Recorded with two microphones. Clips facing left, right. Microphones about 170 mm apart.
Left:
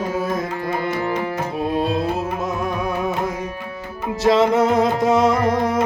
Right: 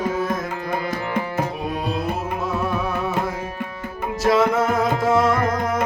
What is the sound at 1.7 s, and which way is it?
Tabla, 25° left (ahead or behind).